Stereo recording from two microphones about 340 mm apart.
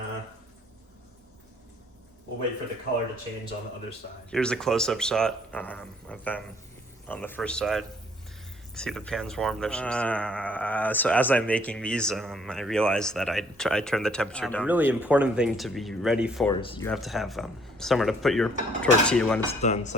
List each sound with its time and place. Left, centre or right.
4.3 s speech: centre
16.5 s speech: centre
16.9 s speech: centre
19.6 s speech: left